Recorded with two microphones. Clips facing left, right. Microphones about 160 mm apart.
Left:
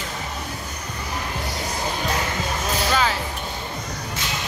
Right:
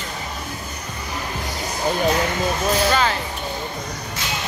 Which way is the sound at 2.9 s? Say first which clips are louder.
Right 2 dB; 5° left (ahead or behind).